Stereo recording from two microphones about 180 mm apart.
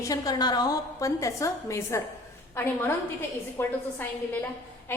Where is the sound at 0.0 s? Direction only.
20° left (ahead or behind).